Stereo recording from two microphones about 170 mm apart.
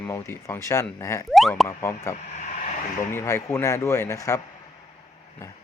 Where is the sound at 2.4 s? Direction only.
45° left (ahead or behind).